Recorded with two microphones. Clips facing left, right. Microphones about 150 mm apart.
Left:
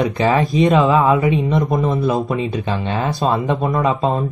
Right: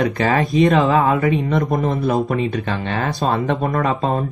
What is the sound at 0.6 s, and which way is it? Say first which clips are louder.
Speech: left 1 dB; 20° left (ahead or behind).